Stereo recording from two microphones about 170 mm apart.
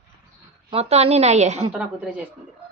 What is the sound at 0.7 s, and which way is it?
A woman's voice, 35° right (ahead or behind).